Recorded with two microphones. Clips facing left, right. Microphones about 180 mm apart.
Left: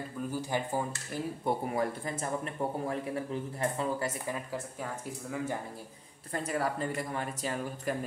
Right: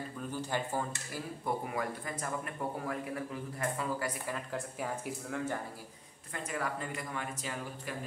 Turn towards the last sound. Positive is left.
turn(degrees=35)  # may be behind; listen again after turning